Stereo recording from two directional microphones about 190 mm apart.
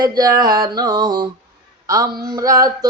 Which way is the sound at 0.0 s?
20° right (ahead or behind).